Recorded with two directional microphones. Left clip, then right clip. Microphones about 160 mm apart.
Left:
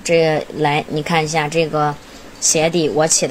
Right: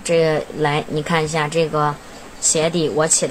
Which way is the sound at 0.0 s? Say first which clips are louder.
Left 2 dB; 15° left (ahead or behind).